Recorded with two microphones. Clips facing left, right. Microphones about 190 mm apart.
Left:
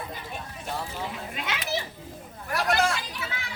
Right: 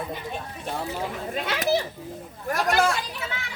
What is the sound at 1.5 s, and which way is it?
Speech, 40° right (ahead or behind).